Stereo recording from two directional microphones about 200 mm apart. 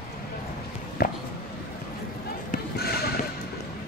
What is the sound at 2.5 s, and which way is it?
Basketball bounce, 50° left (ahead or behind).